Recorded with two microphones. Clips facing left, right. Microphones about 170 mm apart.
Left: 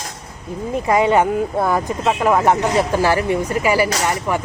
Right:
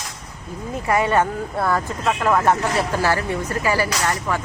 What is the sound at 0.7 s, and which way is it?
Speech, 20° left (ahead or behind).